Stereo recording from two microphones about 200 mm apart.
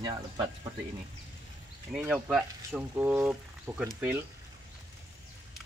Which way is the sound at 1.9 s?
5° right (ahead or behind).